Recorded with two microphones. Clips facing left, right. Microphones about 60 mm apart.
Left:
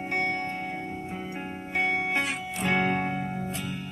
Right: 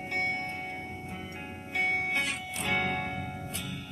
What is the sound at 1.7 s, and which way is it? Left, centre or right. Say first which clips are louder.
Music: left 3 dB; centre.